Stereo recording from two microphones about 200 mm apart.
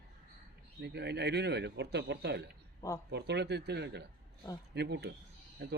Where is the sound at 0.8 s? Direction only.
55° right (ahead or behind).